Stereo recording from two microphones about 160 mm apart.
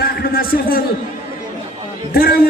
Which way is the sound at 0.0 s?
70° left (ahead or behind).